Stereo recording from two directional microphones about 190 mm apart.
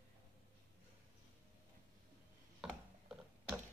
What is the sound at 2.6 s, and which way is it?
Mechanisms, 5° right (ahead or behind).